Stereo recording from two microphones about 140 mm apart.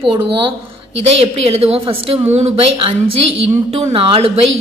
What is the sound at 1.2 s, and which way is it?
A woman's voice, 45° right (ahead or behind).